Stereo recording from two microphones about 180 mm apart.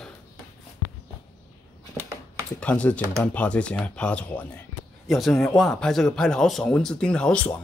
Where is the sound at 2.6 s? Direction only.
5° left (ahead or behind).